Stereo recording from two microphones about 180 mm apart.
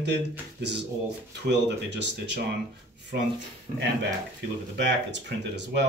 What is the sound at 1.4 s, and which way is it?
Speech, 70° right (ahead or behind).